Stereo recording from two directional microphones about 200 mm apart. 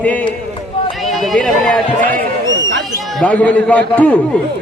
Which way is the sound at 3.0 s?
5° left (ahead or behind).